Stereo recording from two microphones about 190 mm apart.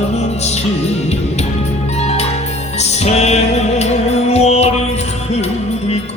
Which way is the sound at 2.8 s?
35° left (ahead or behind).